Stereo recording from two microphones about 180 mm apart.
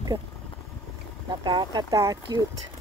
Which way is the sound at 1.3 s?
25° right (ahead or behind).